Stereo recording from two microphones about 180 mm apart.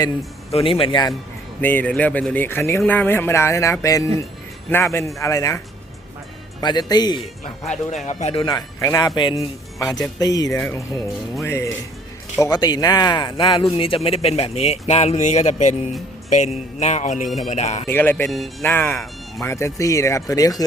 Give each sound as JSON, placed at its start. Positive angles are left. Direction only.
{"t": 0.5, "sound": "a man's voice", "side_deg": 30}
{"t": 1.6, "sound": "a man's voice", "side_deg": 10}
{"t": 8.0, "sound": "a man's voice", "side_deg": 35}
{"t": 17.8, "sound": "speech", "side_deg": 10}
{"t": 18.3, "sound": "speech", "side_deg": 0}
{"t": 18.6, "sound": "speech", "side_deg": 10}